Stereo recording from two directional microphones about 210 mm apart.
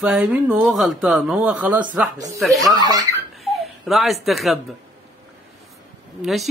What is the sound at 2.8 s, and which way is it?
Speech, 20° right (ahead or behind).